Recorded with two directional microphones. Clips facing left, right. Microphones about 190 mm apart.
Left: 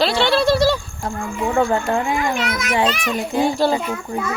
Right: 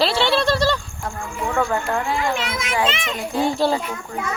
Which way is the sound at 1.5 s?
25° left (ahead or behind).